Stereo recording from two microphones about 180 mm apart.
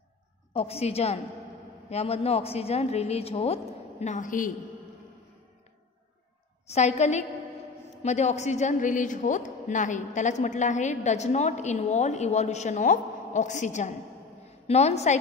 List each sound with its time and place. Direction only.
0.5 s a woman's voice: 35° left (ahead or behind)
6.7 s a woman's voice: 40° left (ahead or behind)